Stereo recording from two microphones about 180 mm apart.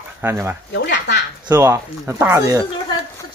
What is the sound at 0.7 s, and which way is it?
Speech, 80° left.